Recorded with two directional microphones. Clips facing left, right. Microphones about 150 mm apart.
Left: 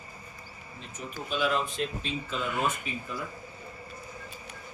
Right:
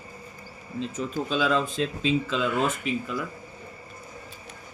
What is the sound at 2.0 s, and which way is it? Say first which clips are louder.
Speech: right 8 dB; 90° right.